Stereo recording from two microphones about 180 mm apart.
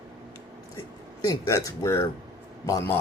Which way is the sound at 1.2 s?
20° left (ahead or behind).